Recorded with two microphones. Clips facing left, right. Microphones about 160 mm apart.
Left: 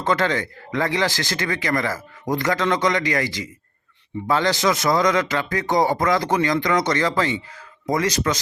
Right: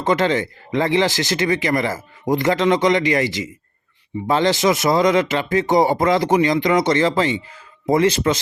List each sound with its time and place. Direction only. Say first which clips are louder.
0.0 s speech: right 3 dB; 20° right (ahead or behind)